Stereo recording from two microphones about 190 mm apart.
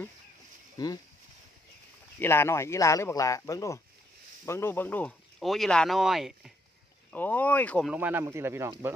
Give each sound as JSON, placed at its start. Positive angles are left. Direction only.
{"t": 0.8, "sound": "speech", "side_deg": 20}
{"t": 2.1, "sound": "speech", "side_deg": 10}
{"t": 7.1, "sound": "speech", "side_deg": 10}
{"t": 7.9, "sound": "speech", "side_deg": -10}